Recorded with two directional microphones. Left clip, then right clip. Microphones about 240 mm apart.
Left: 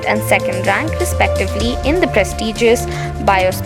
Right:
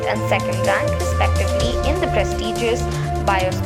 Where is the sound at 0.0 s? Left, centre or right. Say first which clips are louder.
Left 5 dB; left.